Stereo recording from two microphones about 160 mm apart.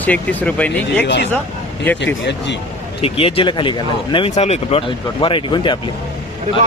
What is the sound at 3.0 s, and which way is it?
Speech, 35° left (ahead or behind).